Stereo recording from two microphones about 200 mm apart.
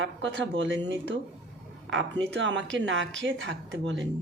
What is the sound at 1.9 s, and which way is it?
Speech, 65° right (ahead or behind).